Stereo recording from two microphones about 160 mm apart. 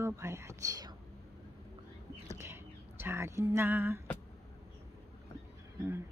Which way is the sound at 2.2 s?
15° right (ahead or behind).